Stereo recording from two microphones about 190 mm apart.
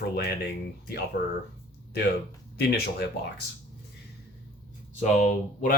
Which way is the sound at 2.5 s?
55° left (ahead or behind).